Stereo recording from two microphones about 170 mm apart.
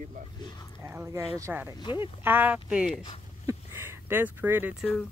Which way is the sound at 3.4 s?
15° right (ahead or behind).